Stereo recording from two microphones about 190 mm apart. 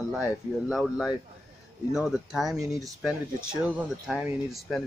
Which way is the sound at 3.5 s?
5° right (ahead or behind).